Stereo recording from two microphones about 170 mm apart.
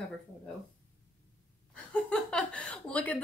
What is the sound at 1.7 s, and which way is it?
Speech, 5° left (ahead or behind).